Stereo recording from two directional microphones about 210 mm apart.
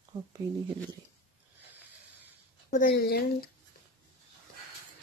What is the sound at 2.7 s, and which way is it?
Speech, 45° left (ahead or behind).